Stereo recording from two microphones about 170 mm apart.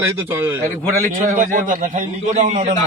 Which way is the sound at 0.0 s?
15° right (ahead or behind).